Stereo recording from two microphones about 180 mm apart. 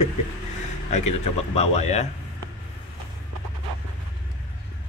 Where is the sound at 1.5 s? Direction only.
35° left (ahead or behind).